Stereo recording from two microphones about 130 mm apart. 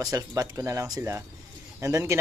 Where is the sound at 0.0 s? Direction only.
30° right (ahead or behind).